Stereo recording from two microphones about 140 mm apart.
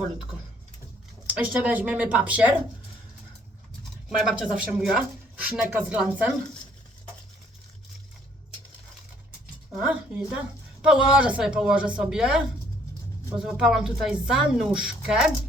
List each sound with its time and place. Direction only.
1.3 s a woman's voice: 10° right (ahead or behind)
4.3 s a woman's voice: 5° right (ahead or behind)
9.7 s a woman's voice: 5° right (ahead or behind)
13.4 s a woman's voice: 5° right (ahead or behind)